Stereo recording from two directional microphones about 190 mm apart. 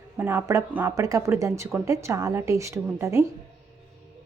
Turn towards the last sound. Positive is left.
turn(degrees=-15)  # may be behind; listen again after turning